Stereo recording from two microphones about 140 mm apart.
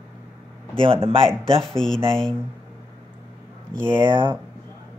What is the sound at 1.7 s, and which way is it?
Speech, 5° left (ahead or behind).